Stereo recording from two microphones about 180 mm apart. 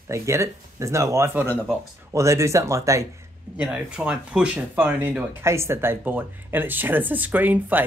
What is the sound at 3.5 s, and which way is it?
Speech, 5° right (ahead or behind).